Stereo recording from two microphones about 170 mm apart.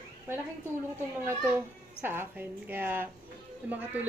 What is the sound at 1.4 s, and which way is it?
A woman's voice, 15° right (ahead or behind).